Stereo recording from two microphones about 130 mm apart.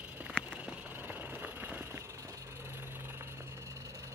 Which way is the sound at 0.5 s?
10° right (ahead or behind).